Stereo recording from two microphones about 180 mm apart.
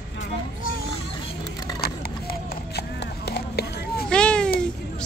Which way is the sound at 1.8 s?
60° left (ahead or behind).